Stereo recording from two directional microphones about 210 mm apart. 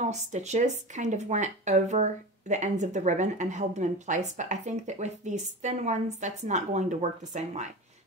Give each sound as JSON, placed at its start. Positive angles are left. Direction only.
{"t": 0.0, "sound": "speech", "side_deg": -35}